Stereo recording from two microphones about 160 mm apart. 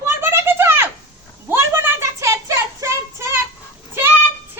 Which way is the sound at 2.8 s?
15° right (ahead or behind).